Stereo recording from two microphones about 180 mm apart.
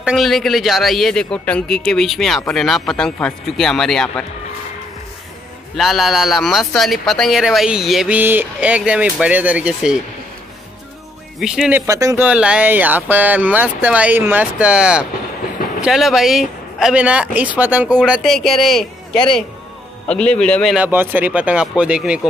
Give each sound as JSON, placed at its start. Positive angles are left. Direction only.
{"t": 0.0, "sound": "speech", "side_deg": 0}
{"t": 5.8, "sound": "speech", "side_deg": 0}
{"t": 11.3, "sound": "speech", "side_deg": -5}
{"t": 11.9, "sound": "speech", "side_deg": -20}
{"t": 12.3, "sound": "speech", "side_deg": -5}
{"t": 20.1, "sound": "a man's voice", "side_deg": 5}
{"t": 20.7, "sound": "speech", "side_deg": -10}